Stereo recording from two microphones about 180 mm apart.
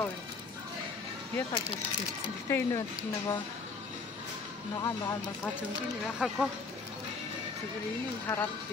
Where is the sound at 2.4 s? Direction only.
15° left (ahead or behind).